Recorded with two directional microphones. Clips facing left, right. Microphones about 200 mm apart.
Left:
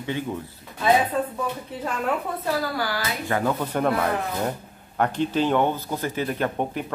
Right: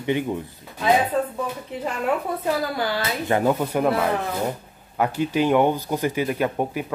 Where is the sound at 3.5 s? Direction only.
5° right (ahead or behind).